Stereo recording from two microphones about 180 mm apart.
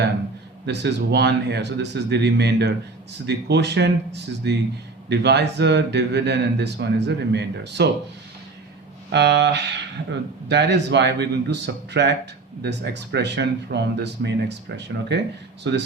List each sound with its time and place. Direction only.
0.6 s speech: 70° right (ahead or behind)
9.1 s speech: 70° right (ahead or behind)